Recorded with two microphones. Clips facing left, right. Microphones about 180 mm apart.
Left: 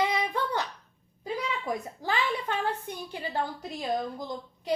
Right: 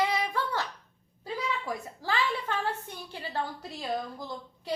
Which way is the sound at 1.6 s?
20° left (ahead or behind).